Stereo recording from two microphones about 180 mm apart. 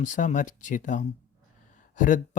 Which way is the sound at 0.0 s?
45° left (ahead or behind).